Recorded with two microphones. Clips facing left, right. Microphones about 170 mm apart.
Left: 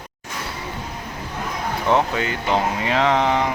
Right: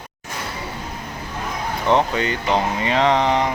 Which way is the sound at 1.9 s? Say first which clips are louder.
Right 2 dB; 5° left (ahead or behind).